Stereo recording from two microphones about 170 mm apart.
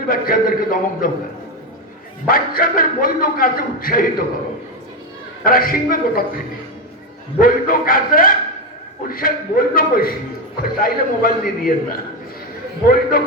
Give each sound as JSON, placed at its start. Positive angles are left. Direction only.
{"t": 0.0, "sound": "a man's voice", "side_deg": 60}
{"t": 2.2, "sound": "a man's voice", "side_deg": 60}
{"t": 5.5, "sound": "a man's voice", "side_deg": 60}
{"t": 7.3, "sound": "a man's voice", "side_deg": 55}